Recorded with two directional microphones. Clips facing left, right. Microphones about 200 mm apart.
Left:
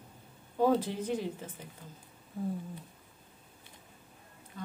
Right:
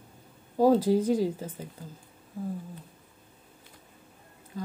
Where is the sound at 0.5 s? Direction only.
35° right (ahead or behind).